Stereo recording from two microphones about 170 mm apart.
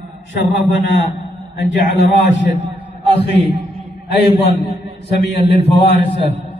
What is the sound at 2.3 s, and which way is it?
Speech, 90° left.